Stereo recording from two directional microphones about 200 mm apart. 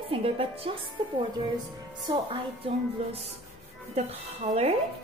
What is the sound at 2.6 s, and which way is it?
Music, 30° right (ahead or behind).